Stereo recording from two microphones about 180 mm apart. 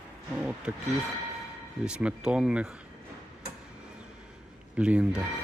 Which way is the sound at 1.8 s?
5° right (ahead or behind).